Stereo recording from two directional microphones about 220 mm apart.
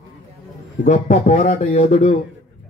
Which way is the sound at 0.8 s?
35° left (ahead or behind).